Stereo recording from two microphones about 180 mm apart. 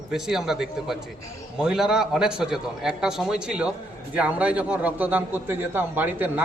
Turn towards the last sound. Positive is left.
turn(degrees=-10)  # may be behind; listen again after turning